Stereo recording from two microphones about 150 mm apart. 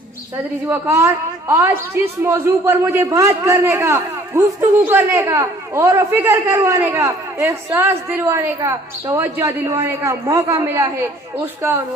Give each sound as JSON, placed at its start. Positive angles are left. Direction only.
{"t": 0.7, "sound": "a man's voice", "side_deg": -20}